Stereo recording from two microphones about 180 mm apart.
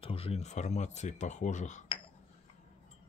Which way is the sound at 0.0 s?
30° left (ahead or behind).